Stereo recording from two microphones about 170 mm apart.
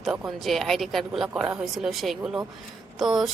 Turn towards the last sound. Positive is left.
turn(degrees=0)  # may be behind; listen again after turning